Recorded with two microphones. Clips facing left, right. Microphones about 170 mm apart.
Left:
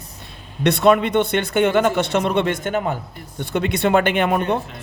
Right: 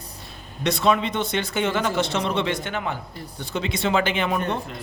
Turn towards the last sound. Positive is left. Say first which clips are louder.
# left 5 dB
turn(degrees=55)  # may be behind; listen again after turning